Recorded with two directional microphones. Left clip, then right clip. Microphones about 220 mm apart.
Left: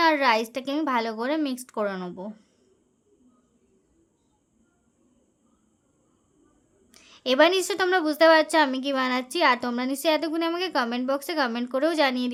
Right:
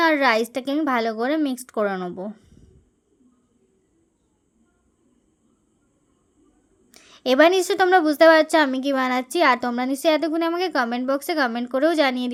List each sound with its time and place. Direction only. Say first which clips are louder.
0.0 s a woman's voice: right 2 dB; 15° right (ahead or behind)
6.9 s a woman's voice: right 4 dB; 20° right (ahead or behind)